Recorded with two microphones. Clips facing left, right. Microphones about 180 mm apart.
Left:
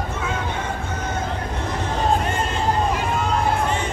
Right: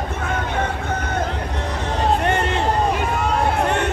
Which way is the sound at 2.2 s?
70° right (ahead or behind).